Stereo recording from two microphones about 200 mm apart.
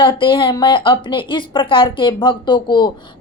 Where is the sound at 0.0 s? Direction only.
25° left (ahead or behind).